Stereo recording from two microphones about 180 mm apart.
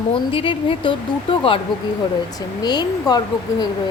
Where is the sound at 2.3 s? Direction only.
25° left (ahead or behind).